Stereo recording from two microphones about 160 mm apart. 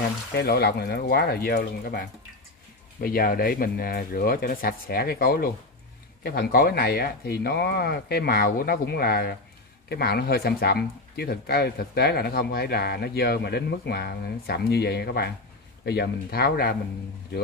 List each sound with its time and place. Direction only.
0.4 s speech: 80° left